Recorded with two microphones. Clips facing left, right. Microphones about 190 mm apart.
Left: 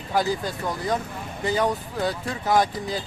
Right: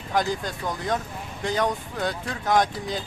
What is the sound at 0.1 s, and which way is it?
Speech, 5° left (ahead or behind).